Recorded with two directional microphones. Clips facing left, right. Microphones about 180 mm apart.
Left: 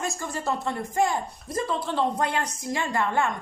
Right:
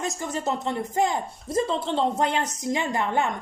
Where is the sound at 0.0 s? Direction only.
20° right (ahead or behind).